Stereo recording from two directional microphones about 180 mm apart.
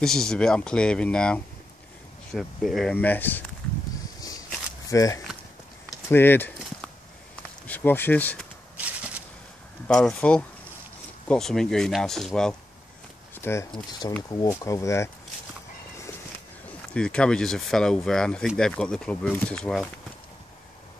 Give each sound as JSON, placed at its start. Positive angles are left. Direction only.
{"t": 0.0, "sound": "speech", "side_deg": 5}
{"t": 4.2, "sound": "walk", "side_deg": 20}
{"t": 7.6, "sound": "speech", "side_deg": 10}
{"t": 8.7, "sound": "a sound", "side_deg": -10}
{"t": 9.8, "sound": "speech", "side_deg": 5}
{"t": 13.3, "sound": "a sound", "side_deg": 15}
{"t": 14.3, "sound": "speech", "side_deg": 20}
{"t": 16.9, "sound": "speech", "side_deg": 5}